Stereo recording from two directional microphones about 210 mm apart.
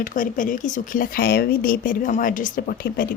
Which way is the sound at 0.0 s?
40° left (ahead or behind).